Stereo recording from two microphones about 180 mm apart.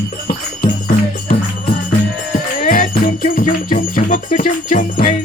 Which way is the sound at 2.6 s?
50° left (ahead or behind).